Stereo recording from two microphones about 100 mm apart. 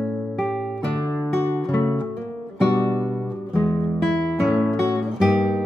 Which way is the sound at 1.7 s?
20° left (ahead or behind).